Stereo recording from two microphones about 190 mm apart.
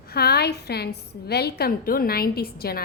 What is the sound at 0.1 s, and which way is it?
A woman's voice, 55° left (ahead or behind).